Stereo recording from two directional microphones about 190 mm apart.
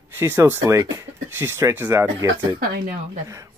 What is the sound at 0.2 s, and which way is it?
Speech, 15° right (ahead or behind).